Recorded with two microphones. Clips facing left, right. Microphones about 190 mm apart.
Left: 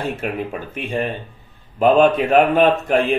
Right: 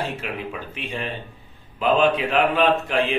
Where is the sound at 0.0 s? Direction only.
45° left (ahead or behind).